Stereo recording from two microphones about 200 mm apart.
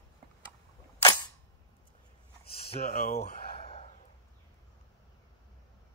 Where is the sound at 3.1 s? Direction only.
35° left (ahead or behind).